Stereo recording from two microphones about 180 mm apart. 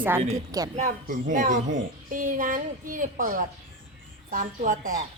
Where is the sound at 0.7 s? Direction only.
45° right (ahead or behind).